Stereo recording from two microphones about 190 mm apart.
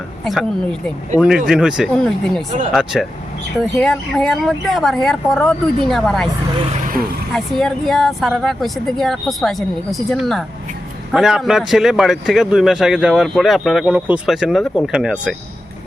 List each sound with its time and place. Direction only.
0.3 s speech: centre (ahead or behind)
6.8 s vehicle: 50° right (ahead or behind)
7.3 s speech: centre (ahead or behind)